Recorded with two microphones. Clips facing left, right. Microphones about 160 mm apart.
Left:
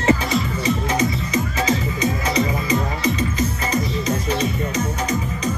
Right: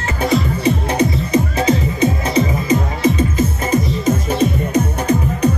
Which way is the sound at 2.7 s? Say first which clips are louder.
Right 5 dB; 50° right (ahead or behind).